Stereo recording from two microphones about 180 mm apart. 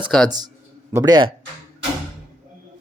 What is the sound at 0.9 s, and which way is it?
Speech, 20° right (ahead or behind).